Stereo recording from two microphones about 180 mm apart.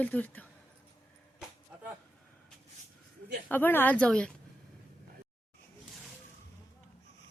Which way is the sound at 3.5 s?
10° left (ahead or behind).